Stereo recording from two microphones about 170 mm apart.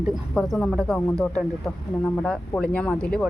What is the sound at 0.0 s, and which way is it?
Speech, centre (ahead or behind).